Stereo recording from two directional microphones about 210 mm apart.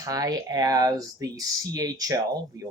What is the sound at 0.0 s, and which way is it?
Speech, 15° right (ahead or behind).